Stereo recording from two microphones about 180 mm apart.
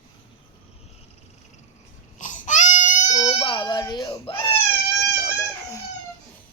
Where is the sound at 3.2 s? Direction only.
30° left (ahead or behind).